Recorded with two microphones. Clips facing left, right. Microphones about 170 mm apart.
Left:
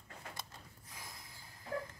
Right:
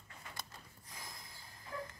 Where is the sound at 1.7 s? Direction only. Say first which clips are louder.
Left 4 dB; 60° left (ahead or behind).